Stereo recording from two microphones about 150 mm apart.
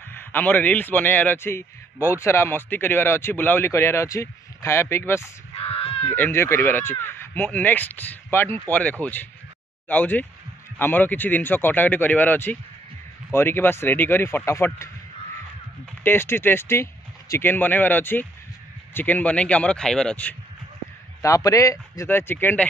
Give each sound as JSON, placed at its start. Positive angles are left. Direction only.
{"t": 0.1, "sound": "a man's voice", "side_deg": 15}
{"t": 5.6, "sound": "crow", "side_deg": 40}
{"t": 6.0, "sound": "a man's voice", "side_deg": 15}
{"t": 16.0, "sound": "a man's voice", "side_deg": 15}
{"t": 21.2, "sound": "speech", "side_deg": 20}